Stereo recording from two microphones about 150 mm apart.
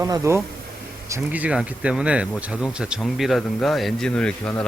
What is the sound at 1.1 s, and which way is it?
Speech, 10° right (ahead or behind).